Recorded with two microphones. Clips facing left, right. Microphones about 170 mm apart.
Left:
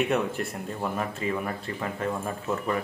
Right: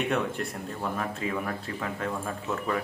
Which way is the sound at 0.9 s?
5° left (ahead or behind).